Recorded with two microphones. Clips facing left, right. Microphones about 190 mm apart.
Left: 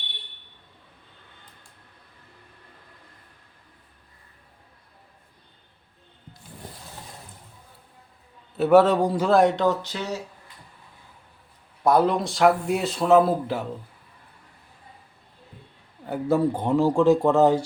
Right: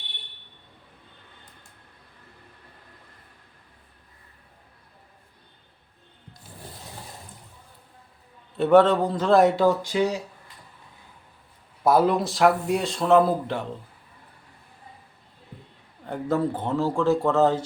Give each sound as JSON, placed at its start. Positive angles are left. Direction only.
{"t": 8.5, "sound": "speech", "side_deg": 5}
{"t": 9.3, "sound": "speech", "side_deg": 0}
{"t": 11.8, "sound": "speech", "side_deg": -5}
{"t": 16.0, "sound": "speech", "side_deg": 10}